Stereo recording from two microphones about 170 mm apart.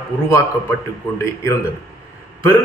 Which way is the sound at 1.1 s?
15° left (ahead or behind).